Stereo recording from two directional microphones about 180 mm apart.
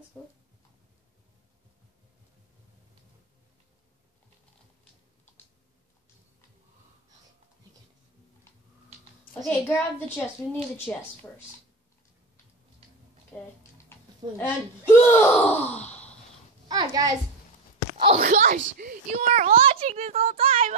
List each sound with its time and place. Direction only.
0.2 s speech: 10° left (ahead or behind)
9.5 s speech: 10° left (ahead or behind)
13.3 s a sound: 5° left (ahead or behind)
14.4 s speech: 10° left (ahead or behind)
16.6 s a child's voice: 20° right (ahead or behind)
17.9 s speech: 30° right (ahead or behind)
18.2 s a child's voice: 45° right (ahead or behind)
20.3 s speech: 30° right (ahead or behind)